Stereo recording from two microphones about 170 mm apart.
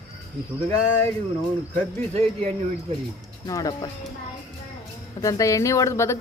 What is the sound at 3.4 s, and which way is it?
Speech, 20° left (ahead or behind).